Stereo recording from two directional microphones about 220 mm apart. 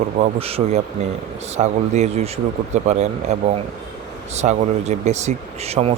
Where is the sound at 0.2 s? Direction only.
25° right (ahead or behind).